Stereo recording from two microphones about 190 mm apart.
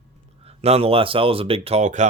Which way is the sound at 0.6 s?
30° right (ahead or behind).